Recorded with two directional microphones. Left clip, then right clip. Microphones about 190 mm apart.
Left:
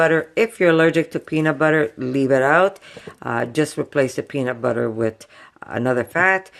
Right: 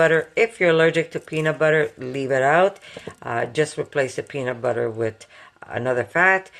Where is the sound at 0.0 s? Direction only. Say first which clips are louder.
Left 1 dB; 50° left (ahead or behind).